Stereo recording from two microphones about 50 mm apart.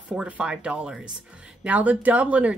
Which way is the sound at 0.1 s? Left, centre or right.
Centre.